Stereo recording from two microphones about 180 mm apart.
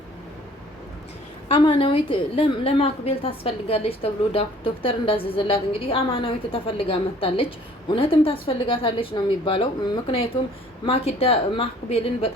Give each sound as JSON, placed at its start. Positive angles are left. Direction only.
{"t": 1.5, "sound": "a woman's voice", "side_deg": 30}